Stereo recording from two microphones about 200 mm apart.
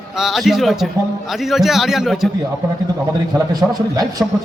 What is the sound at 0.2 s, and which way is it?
A man's voice, centre (ahead or behind).